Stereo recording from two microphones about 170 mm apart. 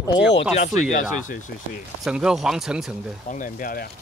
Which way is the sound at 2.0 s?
5° right (ahead or behind).